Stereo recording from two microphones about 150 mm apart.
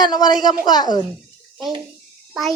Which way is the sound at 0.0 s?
30° left (ahead or behind).